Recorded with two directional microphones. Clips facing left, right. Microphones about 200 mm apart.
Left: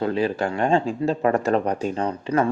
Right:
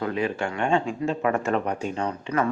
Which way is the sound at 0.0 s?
30° left (ahead or behind).